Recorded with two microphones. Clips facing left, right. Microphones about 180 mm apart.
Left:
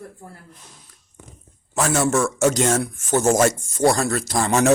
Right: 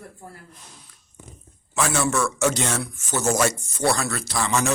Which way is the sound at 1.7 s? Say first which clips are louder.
Left 3 dB; 45° left (ahead or behind).